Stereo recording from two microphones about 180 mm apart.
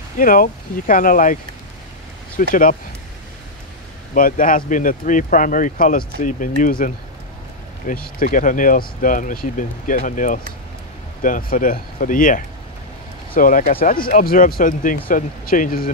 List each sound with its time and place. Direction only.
0.2 s speech: 50° left (ahead or behind)
2.5 s speech: 50° left (ahead or behind)
4.1 s speech: 50° left (ahead or behind)